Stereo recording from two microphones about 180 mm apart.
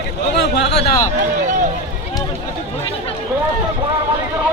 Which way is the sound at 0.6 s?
70° left (ahead or behind).